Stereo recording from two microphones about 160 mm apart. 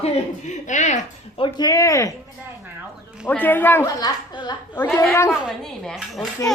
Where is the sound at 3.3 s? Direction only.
10° left (ahead or behind).